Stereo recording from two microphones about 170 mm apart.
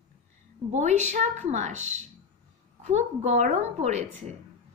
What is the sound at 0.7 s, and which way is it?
A woman's voice, 45° right (ahead or behind).